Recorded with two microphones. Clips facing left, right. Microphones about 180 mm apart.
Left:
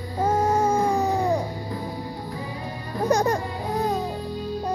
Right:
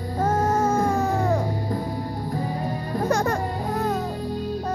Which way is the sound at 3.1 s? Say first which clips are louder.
Left 3 dB; 20° left (ahead or behind).